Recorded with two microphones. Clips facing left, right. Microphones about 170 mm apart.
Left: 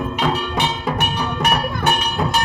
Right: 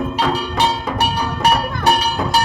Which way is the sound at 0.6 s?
35° right (ahead or behind).